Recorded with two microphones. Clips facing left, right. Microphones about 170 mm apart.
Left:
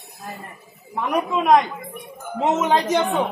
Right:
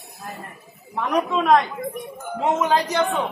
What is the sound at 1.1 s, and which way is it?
A man's voice, 10° left (ahead or behind).